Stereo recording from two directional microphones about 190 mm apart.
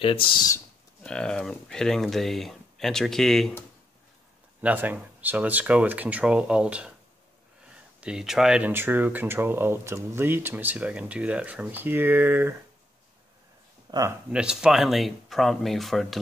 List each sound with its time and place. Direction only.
0.0 s speech: 25° left (ahead or behind)
1.0 s speech: 5° left (ahead or behind)
4.6 s speech: 10° right (ahead or behind)
8.0 s speech: 5° right (ahead or behind)
13.8 s speech: 20° right (ahead or behind)
14.3 s speech: 5° right (ahead or behind)